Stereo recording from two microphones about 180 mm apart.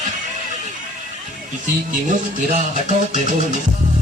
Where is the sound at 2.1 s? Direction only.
45° right (ahead or behind).